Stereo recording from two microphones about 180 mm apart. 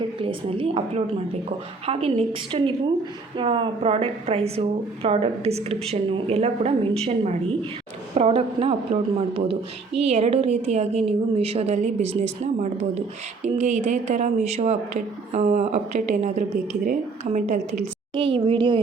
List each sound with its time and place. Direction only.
0.2 s a woman's voice: 30° right (ahead or behind); by 17.6 s 45° right (ahead or behind)
18.1 s a woman's voice: 30° right (ahead or behind)